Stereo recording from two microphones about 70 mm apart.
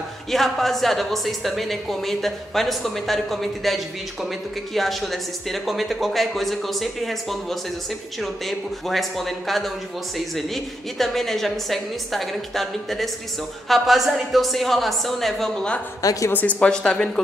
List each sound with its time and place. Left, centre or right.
0.3 s a woman's voice: centre
16.0 s a woman's voice: left
16.3 s speech: left
16.5 s speech: centre